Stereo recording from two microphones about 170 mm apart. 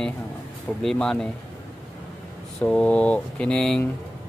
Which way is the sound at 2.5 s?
5° left (ahead or behind).